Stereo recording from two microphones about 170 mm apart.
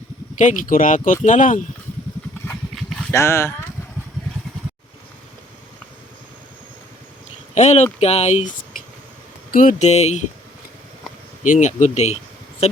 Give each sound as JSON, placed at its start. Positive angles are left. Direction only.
{"t": 0.3, "sound": "speech", "side_deg": 50}
{"t": 3.1, "sound": "speech", "side_deg": 15}
{"t": 7.5, "sound": "speech", "side_deg": 40}
{"t": 9.5, "sound": "speech", "side_deg": 50}
{"t": 11.4, "sound": "speech", "side_deg": 45}